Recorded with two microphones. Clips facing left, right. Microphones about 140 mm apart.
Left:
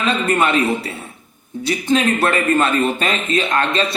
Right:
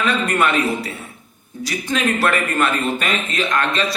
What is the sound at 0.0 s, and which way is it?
A man's voice, 25° left (ahead or behind).